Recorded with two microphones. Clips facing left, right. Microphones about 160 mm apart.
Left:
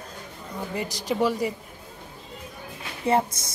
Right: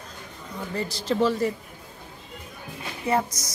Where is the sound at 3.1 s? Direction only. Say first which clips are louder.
Left 2 dB; 25° left (ahead or behind).